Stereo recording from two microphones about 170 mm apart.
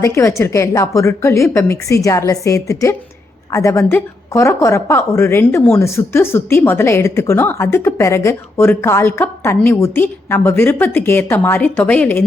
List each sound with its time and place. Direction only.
0.0 s a woman's voice: 15° left (ahead or behind)